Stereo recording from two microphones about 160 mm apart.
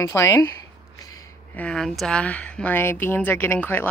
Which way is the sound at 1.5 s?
5° left (ahead or behind).